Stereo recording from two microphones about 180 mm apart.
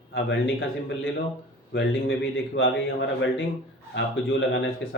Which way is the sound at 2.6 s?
90° left.